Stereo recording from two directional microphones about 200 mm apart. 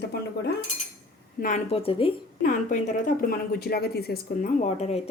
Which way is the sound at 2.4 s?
40° left (ahead or behind).